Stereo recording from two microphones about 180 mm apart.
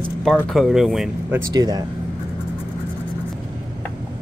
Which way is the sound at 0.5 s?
Centre (ahead or behind).